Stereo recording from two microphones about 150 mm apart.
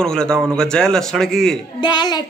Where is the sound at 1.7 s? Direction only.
30° left (ahead or behind).